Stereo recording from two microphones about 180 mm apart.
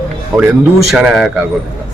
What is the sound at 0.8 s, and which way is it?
Speech, 5° right (ahead or behind).